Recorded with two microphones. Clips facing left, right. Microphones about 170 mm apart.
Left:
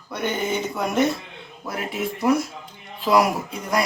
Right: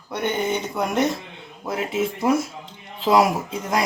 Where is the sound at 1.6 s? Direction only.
20° right (ahead or behind).